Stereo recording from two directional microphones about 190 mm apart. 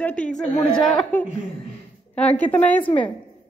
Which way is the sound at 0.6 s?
5° left (ahead or behind).